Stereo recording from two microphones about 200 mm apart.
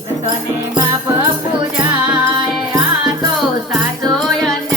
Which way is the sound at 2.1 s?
20° right (ahead or behind).